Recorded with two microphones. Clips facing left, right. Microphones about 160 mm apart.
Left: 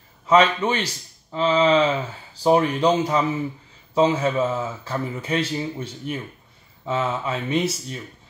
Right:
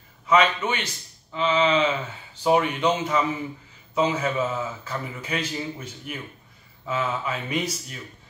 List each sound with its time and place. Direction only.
0.3 s speech: 30° left (ahead or behind)